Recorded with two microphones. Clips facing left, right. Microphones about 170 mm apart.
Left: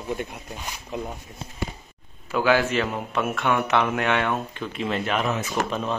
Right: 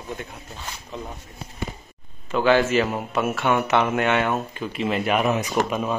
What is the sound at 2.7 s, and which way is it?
A man's voice, 5° right (ahead or behind).